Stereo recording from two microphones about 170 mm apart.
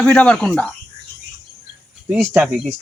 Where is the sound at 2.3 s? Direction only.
10° right (ahead or behind).